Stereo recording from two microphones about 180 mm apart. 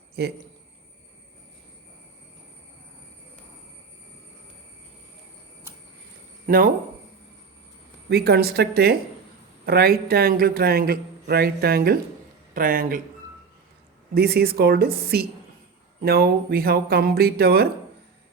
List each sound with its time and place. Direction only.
0.2 s a man's voice: 65° right (ahead or behind)
6.4 s a sound: 55° right (ahead or behind)
8.1 s a man's voice: 60° right (ahead or behind)
14.1 s a man's voice: 60° right (ahead or behind)